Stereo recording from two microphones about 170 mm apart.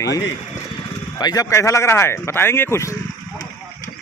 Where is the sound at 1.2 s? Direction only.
20° left (ahead or behind).